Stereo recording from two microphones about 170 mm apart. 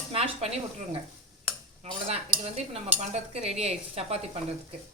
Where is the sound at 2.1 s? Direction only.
40° right (ahead or behind).